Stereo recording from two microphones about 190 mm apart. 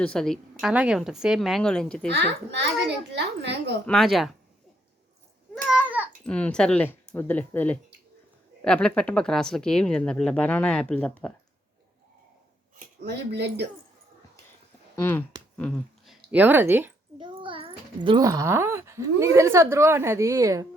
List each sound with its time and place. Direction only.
0.0 s speech: 5° left (ahead or behind)
2.0 s a child's voice: 65° right (ahead or behind)
3.8 s speech: centre (ahead or behind)
5.6 s babbling: 5° right (ahead or behind)
6.2 s speech: 5° left (ahead or behind)
13.0 s a child's voice: 60° right (ahead or behind)
14.9 s speech: 10° left (ahead or behind)
15.5 s a sound: 5° left (ahead or behind)
16.3 s speech: 10° right (ahead or behind)
17.2 s a child's voice: 25° right (ahead or behind)